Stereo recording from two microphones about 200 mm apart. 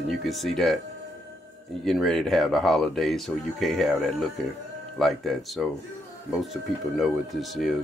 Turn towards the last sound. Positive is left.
turn(degrees=0)  # may be behind; listen again after turning